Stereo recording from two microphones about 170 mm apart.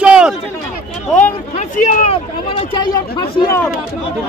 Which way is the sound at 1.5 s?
45° left (ahead or behind).